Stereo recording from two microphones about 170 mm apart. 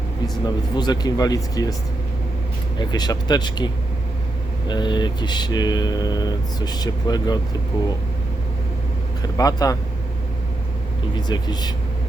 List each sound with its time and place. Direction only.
0.4 s speech: 25° left (ahead or behind)
2.7 s speech: 25° left (ahead or behind)
4.7 s speech: 25° left (ahead or behind)
9.2 s speech: 20° left (ahead or behind)
11.3 s speech: 25° left (ahead or behind)